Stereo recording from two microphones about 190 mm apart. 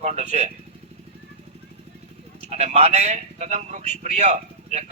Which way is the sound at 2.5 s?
35° right (ahead or behind).